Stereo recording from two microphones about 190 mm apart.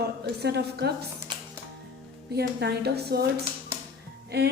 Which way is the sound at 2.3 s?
60° right (ahead or behind).